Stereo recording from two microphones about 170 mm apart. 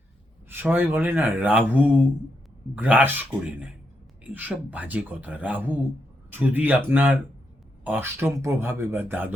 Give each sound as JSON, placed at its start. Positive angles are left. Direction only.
{"t": 0.5, "sound": "speech", "side_deg": -10}